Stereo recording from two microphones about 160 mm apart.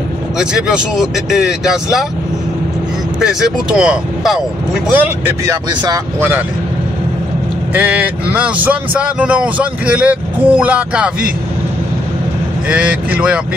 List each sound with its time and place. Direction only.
0.4 s speech: 5° right (ahead or behind)
3.2 s speech: 5° right (ahead or behind); by 6.3 s 20° right (ahead or behind)
7.7 s speech: 10° right (ahead or behind)
12.6 s speech: 10° right (ahead or behind)